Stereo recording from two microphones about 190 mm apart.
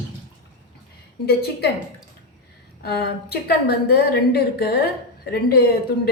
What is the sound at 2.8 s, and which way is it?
A woman's voice, 55° left (ahead or behind).